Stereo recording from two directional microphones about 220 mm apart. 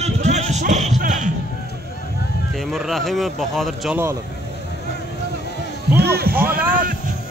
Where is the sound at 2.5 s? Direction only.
Centre (ahead or behind).